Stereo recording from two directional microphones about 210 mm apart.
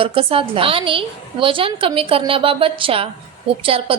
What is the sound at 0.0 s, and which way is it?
A woman's voice, 25° right (ahead or behind).